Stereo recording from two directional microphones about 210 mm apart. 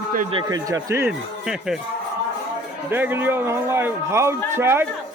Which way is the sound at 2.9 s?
10° right (ahead or behind).